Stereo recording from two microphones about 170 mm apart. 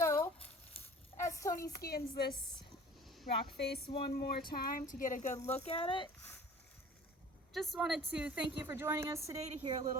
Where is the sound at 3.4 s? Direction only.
70° left (ahead or behind).